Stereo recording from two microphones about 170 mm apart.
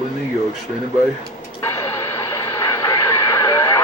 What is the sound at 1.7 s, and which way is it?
Radio, 15° left (ahead or behind).